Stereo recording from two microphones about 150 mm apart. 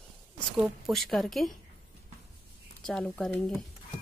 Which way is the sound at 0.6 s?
Centre (ahead or behind).